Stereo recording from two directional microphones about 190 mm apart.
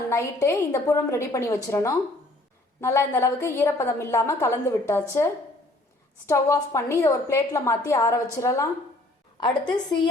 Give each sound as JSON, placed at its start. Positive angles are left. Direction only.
{"t": 0.1, "sound": "a woman's voice", "side_deg": 15}
{"t": 6.2, "sound": "a woman's voice", "side_deg": 15}